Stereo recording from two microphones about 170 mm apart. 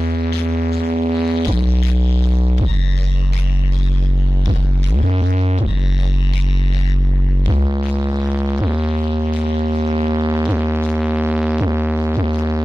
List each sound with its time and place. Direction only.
0.5 s music: 40° right (ahead or behind)
7.6 s music: 25° right (ahead or behind)
8.8 s music: 30° right (ahead or behind)
10.4 s music: 15° right (ahead or behind)